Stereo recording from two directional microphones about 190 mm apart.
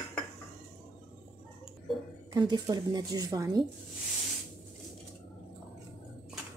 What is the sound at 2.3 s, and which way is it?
Speech, 20° right (ahead or behind).